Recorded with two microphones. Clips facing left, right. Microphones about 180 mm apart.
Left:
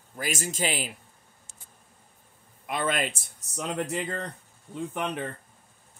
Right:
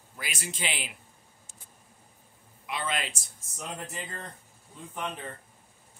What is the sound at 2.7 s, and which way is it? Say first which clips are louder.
Speech: left 5 dB; 50° left (ahead or behind).